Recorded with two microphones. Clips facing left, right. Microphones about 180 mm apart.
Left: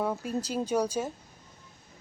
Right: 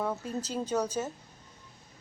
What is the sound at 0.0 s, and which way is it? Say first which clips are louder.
Speech: left 2 dB; 10° left (ahead or behind).